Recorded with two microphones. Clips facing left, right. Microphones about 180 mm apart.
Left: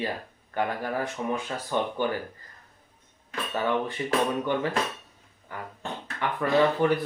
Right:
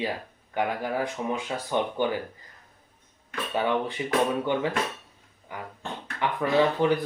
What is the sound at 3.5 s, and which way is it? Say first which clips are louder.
Speech: right 1 dB; 15° right (ahead or behind).